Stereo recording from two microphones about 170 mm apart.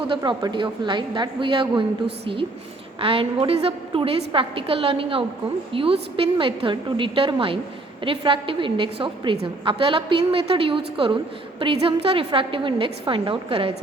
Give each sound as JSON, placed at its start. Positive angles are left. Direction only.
{"t": 0.1, "sound": "a woman's voice", "side_deg": -25}